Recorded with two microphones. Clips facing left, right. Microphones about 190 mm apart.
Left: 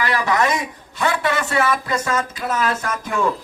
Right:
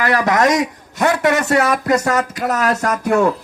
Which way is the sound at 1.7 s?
75° right (ahead or behind).